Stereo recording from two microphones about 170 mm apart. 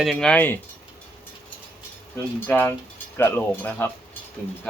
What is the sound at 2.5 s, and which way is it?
Speech, 10° left (ahead or behind).